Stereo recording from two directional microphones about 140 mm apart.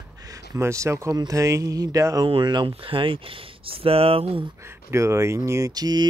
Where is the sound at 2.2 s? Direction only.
35° right (ahead or behind).